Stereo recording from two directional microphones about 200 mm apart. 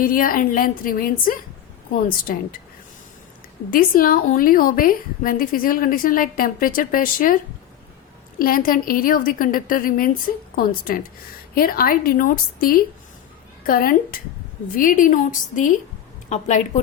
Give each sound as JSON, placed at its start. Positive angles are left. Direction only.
{"t": 0.0, "sound": "a woman's voice", "side_deg": 45}
{"t": 3.7, "sound": "a woman's voice", "side_deg": 45}
{"t": 8.4, "sound": "a woman's voice", "side_deg": 45}